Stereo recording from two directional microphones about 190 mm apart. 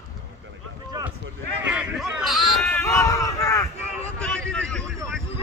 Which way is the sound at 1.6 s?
5° right (ahead or behind).